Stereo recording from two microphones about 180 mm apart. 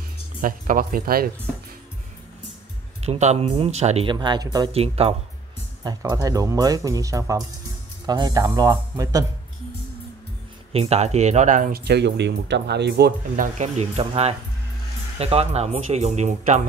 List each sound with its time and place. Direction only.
0.4 s speech: 50° right (ahead or behind)
3.1 s speech: 35° right (ahead or behind); by 4.6 s 20° right (ahead or behind)
4.7 s speech: 35° right (ahead or behind)
5.9 s speech: 20° right (ahead or behind)
10.7 s speech: 35° right (ahead or behind)
11.8 s speech: 70° right (ahead or behind)
13.4 s speech: 40° right (ahead or behind)